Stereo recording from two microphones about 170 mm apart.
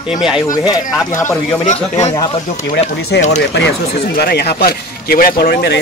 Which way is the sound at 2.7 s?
75° left (ahead or behind).